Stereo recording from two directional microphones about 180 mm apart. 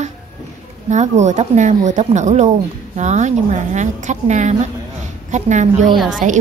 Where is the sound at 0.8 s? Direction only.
40° right (ahead or behind).